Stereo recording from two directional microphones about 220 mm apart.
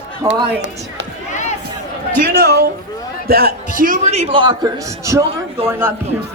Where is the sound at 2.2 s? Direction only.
40° right (ahead or behind).